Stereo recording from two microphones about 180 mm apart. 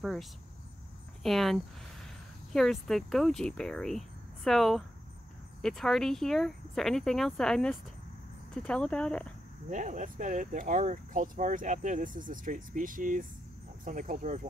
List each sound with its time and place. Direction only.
0.0 s speech: centre (ahead or behind)
9.7 s speech: 45° right (ahead or behind)